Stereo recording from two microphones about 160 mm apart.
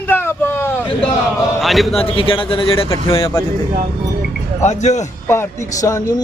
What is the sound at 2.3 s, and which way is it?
Speech, 35° left (ahead or behind).